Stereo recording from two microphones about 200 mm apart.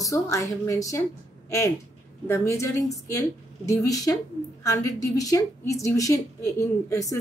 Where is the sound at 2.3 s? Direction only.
15° left (ahead or behind).